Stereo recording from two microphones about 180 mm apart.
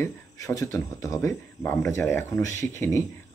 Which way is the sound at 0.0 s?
15° left (ahead or behind).